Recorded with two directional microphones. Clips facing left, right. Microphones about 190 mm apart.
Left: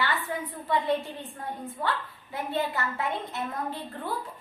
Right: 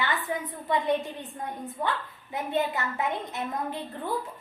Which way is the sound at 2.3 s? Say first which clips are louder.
Right 2 dB; 20° right (ahead or behind).